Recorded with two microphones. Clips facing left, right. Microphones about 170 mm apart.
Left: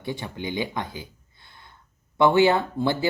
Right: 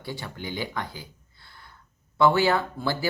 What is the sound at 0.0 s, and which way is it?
Speech, 20° left (ahead or behind).